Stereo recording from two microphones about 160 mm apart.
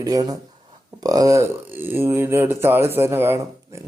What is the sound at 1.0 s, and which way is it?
Speech, 20° right (ahead or behind).